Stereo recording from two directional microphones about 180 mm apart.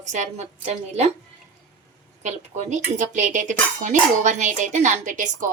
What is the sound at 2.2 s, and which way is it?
A woman's voice, 40° right (ahead or behind).